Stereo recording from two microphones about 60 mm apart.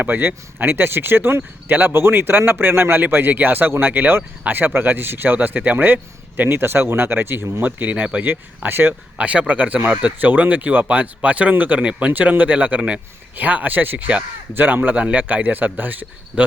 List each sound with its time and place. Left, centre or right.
0.0 s speech: right
8.3 s speech: right
9.1 s speech: right